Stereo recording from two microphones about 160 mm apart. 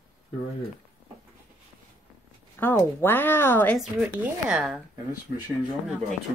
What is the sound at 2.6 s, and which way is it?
Speech, 15° left (ahead or behind).